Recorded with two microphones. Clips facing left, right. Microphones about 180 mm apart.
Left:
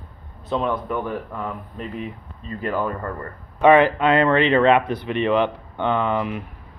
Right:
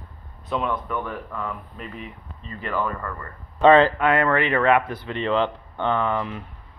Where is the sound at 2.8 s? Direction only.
35° left (ahead or behind).